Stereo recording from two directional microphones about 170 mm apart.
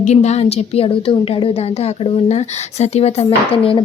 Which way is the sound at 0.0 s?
40° left (ahead or behind).